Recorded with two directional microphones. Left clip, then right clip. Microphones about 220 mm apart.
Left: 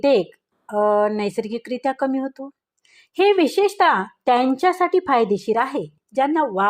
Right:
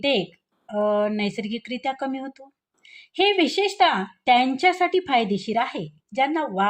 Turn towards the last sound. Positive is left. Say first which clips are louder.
# left 3 dB
turn(degrees=30)  # may be behind; listen again after turning